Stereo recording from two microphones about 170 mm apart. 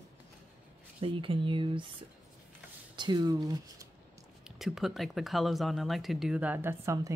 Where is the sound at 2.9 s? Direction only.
25° right (ahead or behind).